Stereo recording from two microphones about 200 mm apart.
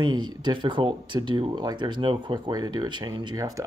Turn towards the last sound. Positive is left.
turn(degrees=-20)  # may be behind; listen again after turning